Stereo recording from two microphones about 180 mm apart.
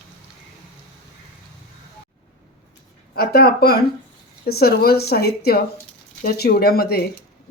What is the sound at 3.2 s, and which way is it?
Speech, 60° left (ahead or behind).